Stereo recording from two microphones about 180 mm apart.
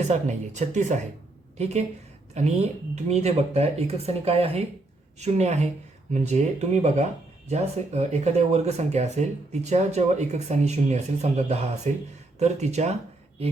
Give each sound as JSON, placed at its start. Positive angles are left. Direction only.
{"t": 0.0, "sound": "speech", "side_deg": -40}
{"t": 2.3, "sound": "speech", "side_deg": -40}